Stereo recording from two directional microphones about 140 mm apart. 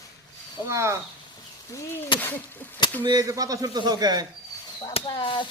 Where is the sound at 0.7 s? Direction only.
20° right (ahead or behind).